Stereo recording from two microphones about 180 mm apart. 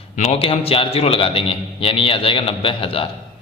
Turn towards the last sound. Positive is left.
turn(degrees=30)  # may be behind; listen again after turning